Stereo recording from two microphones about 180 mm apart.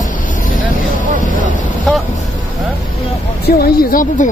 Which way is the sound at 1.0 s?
45° right (ahead or behind).